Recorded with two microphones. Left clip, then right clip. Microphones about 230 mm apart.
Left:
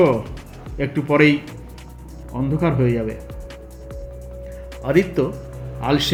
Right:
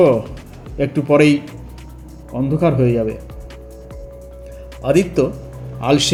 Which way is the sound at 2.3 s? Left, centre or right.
Centre.